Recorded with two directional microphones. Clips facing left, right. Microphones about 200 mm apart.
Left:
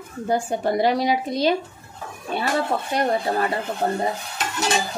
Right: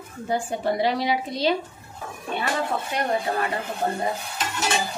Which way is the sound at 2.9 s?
35° left (ahead or behind).